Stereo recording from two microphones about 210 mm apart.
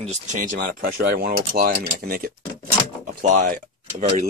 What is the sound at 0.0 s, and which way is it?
Speech, 35° right (ahead or behind).